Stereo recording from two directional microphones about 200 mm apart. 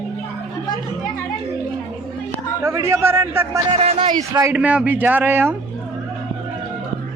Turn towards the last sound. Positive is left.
turn(degrees=-10)  # may be behind; listen again after turning